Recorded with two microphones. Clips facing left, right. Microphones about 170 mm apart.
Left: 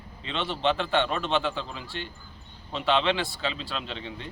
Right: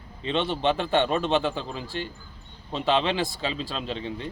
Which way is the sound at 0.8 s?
40° right (ahead or behind).